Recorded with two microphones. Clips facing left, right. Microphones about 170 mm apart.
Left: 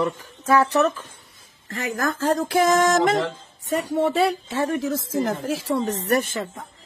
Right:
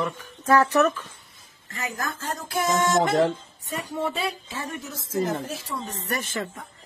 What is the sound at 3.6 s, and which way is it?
A woman's voice, 80° left.